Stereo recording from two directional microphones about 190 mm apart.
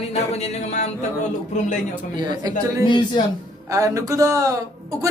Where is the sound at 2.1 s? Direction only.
20° right (ahead or behind).